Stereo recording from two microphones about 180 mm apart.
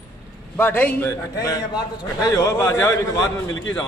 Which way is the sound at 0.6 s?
10° left (ahead or behind).